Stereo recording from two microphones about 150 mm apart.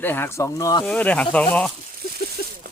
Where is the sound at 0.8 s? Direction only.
10° left (ahead or behind).